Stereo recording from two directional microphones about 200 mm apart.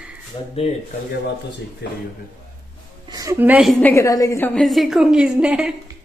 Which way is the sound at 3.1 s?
15° right (ahead or behind).